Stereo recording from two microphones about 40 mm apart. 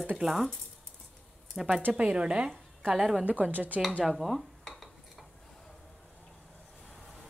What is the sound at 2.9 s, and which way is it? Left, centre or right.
Speech, centre.